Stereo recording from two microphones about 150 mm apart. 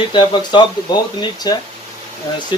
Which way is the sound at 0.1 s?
30° left (ahead or behind).